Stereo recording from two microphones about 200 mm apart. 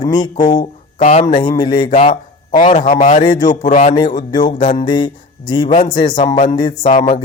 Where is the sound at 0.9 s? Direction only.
35° left (ahead or behind).